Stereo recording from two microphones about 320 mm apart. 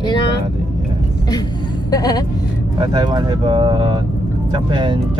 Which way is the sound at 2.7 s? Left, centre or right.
Centre.